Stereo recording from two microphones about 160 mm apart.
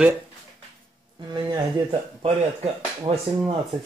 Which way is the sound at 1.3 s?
30° right (ahead or behind).